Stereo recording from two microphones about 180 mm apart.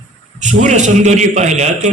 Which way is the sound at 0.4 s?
40° right (ahead or behind).